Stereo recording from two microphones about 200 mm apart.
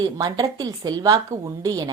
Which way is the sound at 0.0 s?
20° right (ahead or behind).